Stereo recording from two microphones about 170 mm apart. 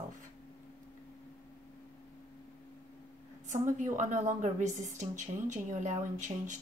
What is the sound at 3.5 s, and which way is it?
Speech, 45° right (ahead or behind).